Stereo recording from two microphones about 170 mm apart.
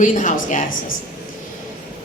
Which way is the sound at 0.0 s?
50° left (ahead or behind).